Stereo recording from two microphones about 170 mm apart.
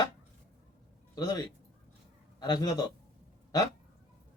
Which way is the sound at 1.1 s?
20° left (ahead or behind).